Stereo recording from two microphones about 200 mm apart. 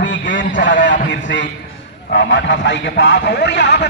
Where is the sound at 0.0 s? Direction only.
65° left (ahead or behind).